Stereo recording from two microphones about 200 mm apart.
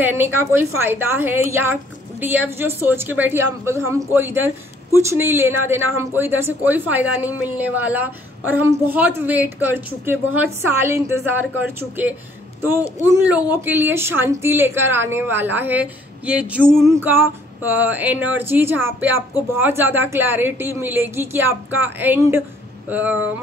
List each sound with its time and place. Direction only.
0.0 s a woman's voice: 10° right (ahead or behind)
13.5 s a woman's voice: 10° right (ahead or behind)